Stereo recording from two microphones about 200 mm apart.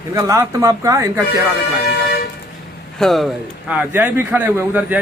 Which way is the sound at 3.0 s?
Centre (ahead or behind).